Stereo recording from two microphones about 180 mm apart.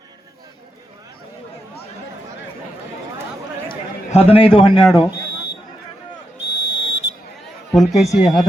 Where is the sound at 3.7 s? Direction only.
30° left (ahead or behind).